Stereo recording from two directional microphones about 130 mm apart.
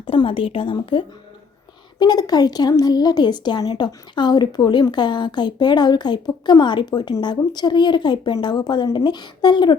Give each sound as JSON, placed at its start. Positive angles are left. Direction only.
{"t": 0.0, "sound": "speech", "side_deg": 45}